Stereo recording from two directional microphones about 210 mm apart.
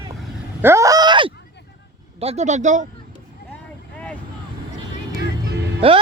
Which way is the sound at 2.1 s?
30° right (ahead or behind).